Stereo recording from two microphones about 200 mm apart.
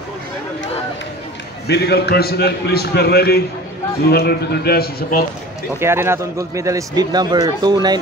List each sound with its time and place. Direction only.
1.7 s a man's voice: 55° left (ahead or behind)
5.8 s a man's voice: 10° right (ahead or behind)